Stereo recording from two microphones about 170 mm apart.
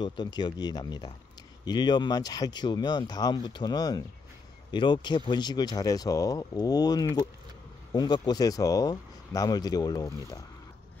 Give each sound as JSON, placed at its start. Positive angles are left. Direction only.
{"t": 0.0, "sound": "speech", "side_deg": 25}